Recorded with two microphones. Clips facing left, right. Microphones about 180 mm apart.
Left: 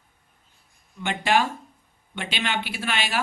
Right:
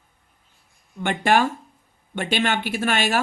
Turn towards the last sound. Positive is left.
turn(degrees=-45)  # may be behind; listen again after turning